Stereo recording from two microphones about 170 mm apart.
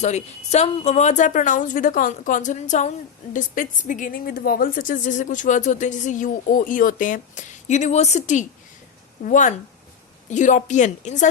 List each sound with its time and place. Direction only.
0.0 s speech: 40° left (ahead or behind)